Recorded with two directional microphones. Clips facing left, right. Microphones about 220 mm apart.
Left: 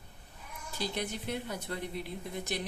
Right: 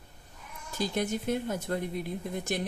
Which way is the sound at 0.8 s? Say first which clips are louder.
Right 6 dB; 45° right (ahead or behind).